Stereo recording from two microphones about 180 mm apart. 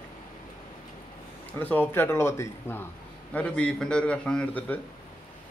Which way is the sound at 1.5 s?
10° left (ahead or behind).